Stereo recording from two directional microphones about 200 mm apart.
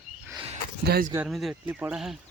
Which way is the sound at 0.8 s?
50° right (ahead or behind).